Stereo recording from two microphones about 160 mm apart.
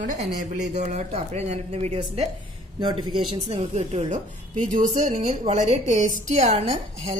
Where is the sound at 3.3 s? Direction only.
40° right (ahead or behind).